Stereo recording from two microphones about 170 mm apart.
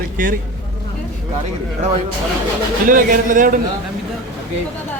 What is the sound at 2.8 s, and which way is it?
Speech, 55° right (ahead or behind).